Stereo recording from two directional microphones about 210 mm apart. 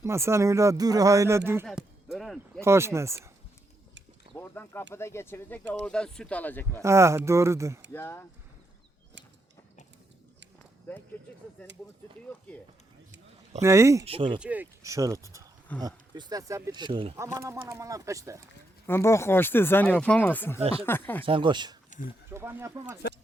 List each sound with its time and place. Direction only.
0.0 s speech: 15° right (ahead or behind)
1.6 s a sound: centre (ahead or behind)
2.6 s speech: 10° right (ahead or behind)
4.4 s a sound: 10° left (ahead or behind)
4.9 s speech: 10° left (ahead or behind)
6.8 s speech: 15° right (ahead or behind)
7.9 s speech: 10° left (ahead or behind)
11.6 s speech: 5° left (ahead or behind)
13.6 s speech: 15° right (ahead or behind)
14.0 s speech: 25° right (ahead or behind)
14.3 s speech: 5° right (ahead or behind); by 17.2 s 25° right (ahead or behind)
17.2 s speech: 15° right (ahead or behind)
18.9 s speech: 10° left (ahead or behind)
21.2 s speech: 25° right (ahead or behind)